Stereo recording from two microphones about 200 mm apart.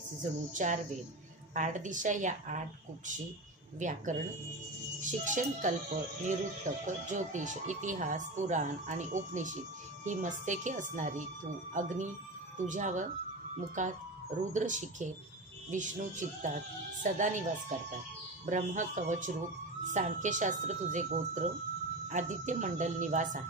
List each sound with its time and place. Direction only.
0.2 s speech: 40° right (ahead or behind)
3.8 s speech: 40° right (ahead or behind)
5.0 s speech: 40° right (ahead or behind)